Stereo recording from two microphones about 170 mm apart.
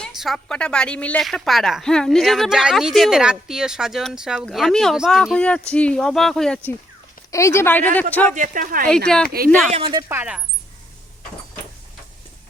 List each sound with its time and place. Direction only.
0.0 s speech: centre (ahead or behind)
7.3 s speech: 15° left (ahead or behind)
8.4 s speech: 50° right (ahead or behind)
9.0 s speech: 5° left (ahead or behind)
9.7 s speech: 30° right (ahead or behind)
10.1 s speech: 10° right (ahead or behind)